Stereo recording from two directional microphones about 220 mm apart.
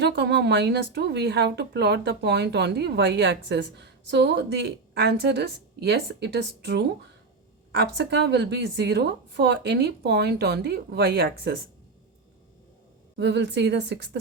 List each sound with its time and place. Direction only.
0.0 s speech: 50° right (ahead or behind)
13.1 s speech: 50° right (ahead or behind)